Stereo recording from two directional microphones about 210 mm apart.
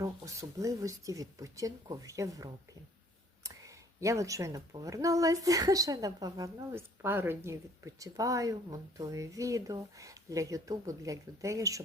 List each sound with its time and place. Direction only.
0.0 s speech: 15° right (ahead or behind)